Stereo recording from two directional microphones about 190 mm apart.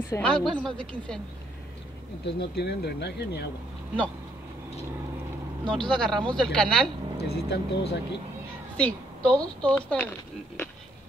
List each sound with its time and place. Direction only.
0.1 s a woman's voice: 5° left (ahead or behind)
2.2 s speech: 60° left (ahead or behind)
5.7 s a woman's voice: 5° left (ahead or behind)
7.2 s speech: 60° left (ahead or behind)
8.7 s a woman's voice: 5° left (ahead or behind)